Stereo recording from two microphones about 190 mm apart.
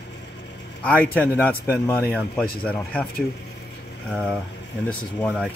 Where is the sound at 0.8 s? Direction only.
5° left (ahead or behind).